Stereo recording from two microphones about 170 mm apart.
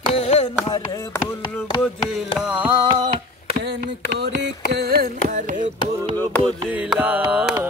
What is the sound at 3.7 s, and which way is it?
Mantra, 80° right.